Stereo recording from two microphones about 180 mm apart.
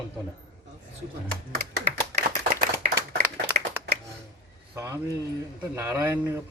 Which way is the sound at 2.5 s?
65° right (ahead or behind).